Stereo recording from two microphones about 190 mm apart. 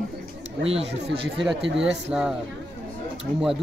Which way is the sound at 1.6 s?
70° right (ahead or behind).